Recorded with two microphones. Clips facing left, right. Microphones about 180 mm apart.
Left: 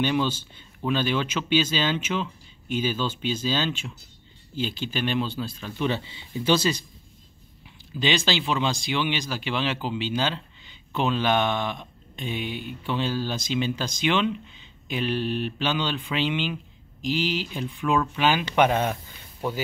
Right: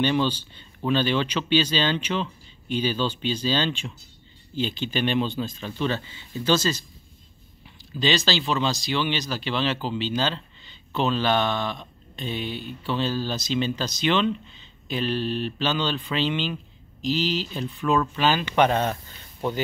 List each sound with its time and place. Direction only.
0.0 s speech: 5° left (ahead or behind)
5.8 s speech: 15° left (ahead or behind)
8.0 s speech: 15° left (ahead or behind)